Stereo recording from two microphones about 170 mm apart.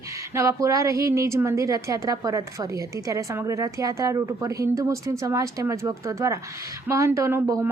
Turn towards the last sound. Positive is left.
turn(degrees=-15)  # may be behind; listen again after turning